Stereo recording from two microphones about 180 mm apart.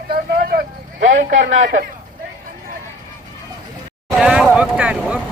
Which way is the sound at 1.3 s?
90° right.